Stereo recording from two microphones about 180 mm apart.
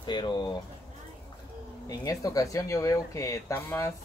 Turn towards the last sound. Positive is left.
turn(degrees=15)  # may be behind; listen again after turning